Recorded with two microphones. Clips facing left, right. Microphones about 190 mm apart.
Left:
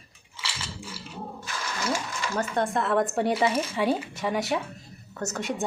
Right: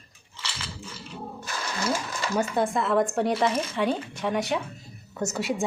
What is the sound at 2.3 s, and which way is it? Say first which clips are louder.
Speech: right 2 dB; 5° right (ahead or behind).